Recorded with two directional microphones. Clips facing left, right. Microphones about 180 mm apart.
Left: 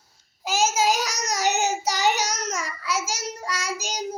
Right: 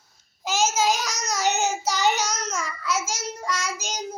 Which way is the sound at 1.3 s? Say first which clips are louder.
Even; 15° left (ahead or behind).